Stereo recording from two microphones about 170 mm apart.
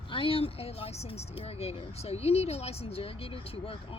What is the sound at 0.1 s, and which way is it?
Speech, 30° left (ahead or behind).